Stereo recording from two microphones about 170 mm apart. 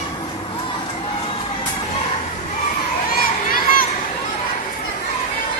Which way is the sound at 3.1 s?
60° left (ahead or behind).